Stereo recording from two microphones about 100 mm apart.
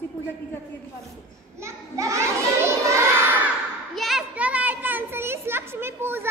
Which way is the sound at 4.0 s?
Centre (ahead or behind).